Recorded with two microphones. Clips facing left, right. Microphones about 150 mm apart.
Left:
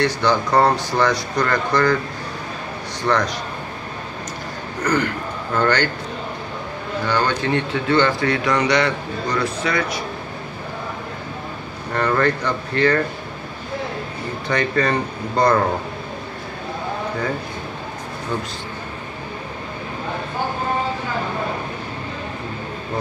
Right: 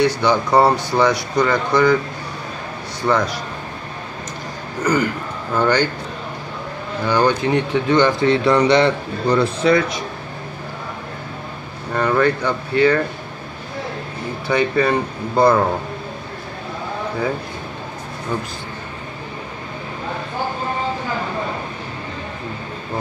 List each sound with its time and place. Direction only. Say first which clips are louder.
0.0 s speech: right 2 dB; 15° right (ahead or behind)
3.0 s speech: right 2 dB; 10° right (ahead or behind)
4.8 s speech: right 2 dB; 10° right (ahead or behind)
7.1 s speech: right 4 dB; 15° right (ahead or behind); by 9.8 s 30° right (ahead or behind)
11.9 s speech: right 2 dB; 10° right (ahead or behind)
14.5 s speech: right 3 dB; 10° right (ahead or behind)